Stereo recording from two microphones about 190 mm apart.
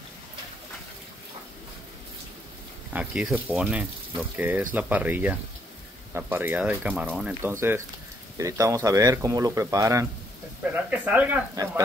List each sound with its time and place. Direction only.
2.9 s speech: 10° right (ahead or behind)